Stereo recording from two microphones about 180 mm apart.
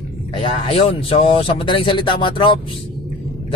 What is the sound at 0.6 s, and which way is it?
Speech, 30° left (ahead or behind).